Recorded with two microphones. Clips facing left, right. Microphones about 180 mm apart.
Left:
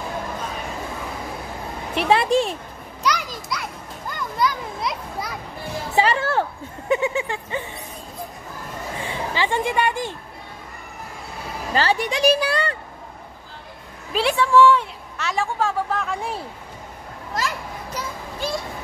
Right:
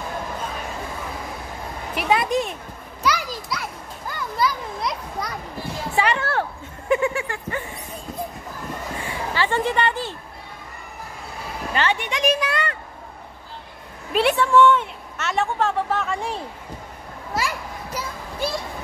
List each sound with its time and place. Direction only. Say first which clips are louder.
2.0 s a woman's voice: left 3 dB; 30° left (ahead or behind)
3.0 s children playing: right 1 dB; centre (ahead or behind)
5.9 s a woman's voice: left 2 dB; 30° left (ahead or behind)
6.9 s a sound: even; 20° left (ahead or behind)
9.0 s speech: left 1 dB; 15° left (ahead or behind)
11.7 s a woman's voice: left 3 dB; 35° left (ahead or behind)
14.1 s a woman's voice: even; centre (ahead or behind)
17.3 s children playing: right 1 dB; 10° right (ahead or behind)